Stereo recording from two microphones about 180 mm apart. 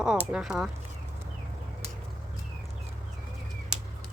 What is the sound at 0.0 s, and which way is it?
Speech, 5° right (ahead or behind).